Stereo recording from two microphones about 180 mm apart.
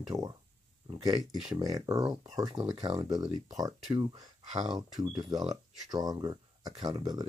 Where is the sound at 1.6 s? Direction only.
20° right (ahead or behind).